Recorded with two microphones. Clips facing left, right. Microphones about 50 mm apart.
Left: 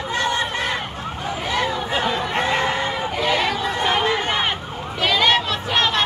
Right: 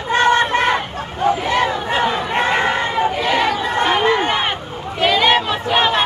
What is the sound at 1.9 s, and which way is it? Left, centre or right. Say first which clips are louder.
Chatter: right 4 dB; centre.